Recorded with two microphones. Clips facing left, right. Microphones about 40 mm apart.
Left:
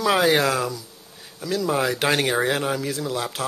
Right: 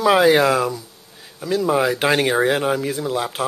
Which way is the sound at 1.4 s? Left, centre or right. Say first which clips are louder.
Right 4 dB; right.